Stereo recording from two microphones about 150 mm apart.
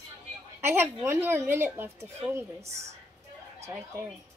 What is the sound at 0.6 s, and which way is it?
A woman's voice, 15° right (ahead or behind).